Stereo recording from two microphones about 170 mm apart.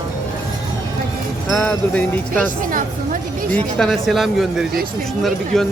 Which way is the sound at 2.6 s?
50° right (ahead or behind).